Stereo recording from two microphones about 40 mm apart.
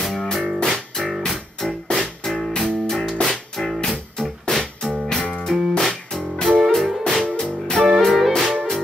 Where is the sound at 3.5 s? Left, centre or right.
Centre.